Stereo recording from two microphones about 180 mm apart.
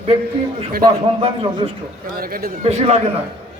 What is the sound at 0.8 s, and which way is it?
Speech, 30° right (ahead or behind).